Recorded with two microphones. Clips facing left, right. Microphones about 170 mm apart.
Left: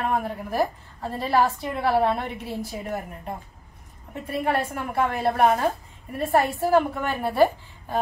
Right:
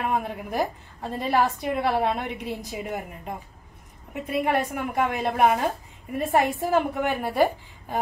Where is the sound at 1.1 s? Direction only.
15° right (ahead or behind).